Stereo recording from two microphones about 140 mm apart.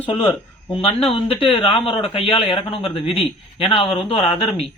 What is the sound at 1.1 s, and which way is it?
Speech, 40° left (ahead or behind).